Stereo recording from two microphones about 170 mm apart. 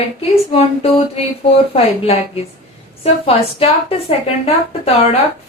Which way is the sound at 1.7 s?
35° left (ahead or behind).